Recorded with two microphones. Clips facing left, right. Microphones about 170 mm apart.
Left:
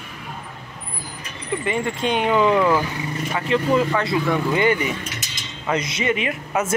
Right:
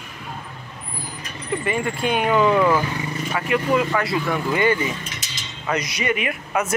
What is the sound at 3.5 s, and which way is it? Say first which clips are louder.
Speech: left 1 dB; 25° left (ahead or behind).